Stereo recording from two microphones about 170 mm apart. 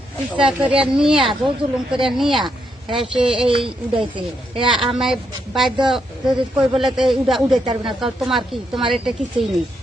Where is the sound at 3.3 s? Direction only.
30° right (ahead or behind).